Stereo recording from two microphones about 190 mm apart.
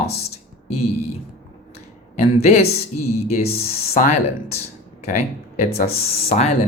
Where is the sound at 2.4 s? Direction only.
35° left (ahead or behind).